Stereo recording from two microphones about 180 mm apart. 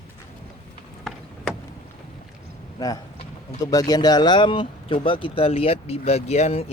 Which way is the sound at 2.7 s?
20° left (ahead or behind).